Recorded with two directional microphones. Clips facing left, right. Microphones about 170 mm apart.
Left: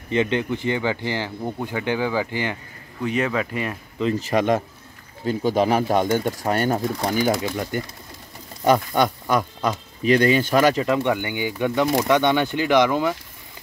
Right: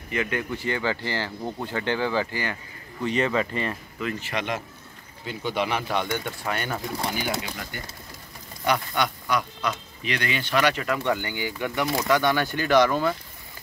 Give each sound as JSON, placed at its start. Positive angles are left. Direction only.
{"t": 0.1, "sound": "speech", "side_deg": 25}
{"t": 3.0, "sound": "speech", "side_deg": 0}
{"t": 4.2, "sound": "speech", "side_deg": 40}
{"t": 10.8, "sound": "speech", "side_deg": 20}